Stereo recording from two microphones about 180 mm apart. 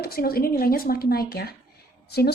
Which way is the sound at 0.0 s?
55° left (ahead or behind).